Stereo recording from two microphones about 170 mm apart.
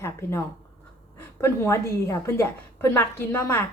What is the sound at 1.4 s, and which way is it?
A woman's voice, 15° left (ahead or behind).